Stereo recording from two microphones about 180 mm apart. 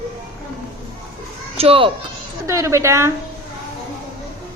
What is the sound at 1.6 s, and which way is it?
Speech, 30° right (ahead or behind).